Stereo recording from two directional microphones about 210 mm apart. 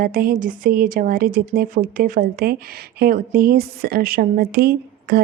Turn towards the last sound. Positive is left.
turn(degrees=-45)  # may be behind; listen again after turning